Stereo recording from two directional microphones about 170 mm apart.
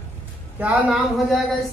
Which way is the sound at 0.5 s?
5° right (ahead or behind).